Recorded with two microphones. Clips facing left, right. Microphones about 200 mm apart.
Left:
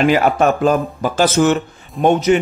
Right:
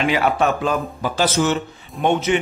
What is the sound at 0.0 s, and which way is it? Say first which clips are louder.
Speech: left 5 dB; 45° left (ahead or behind).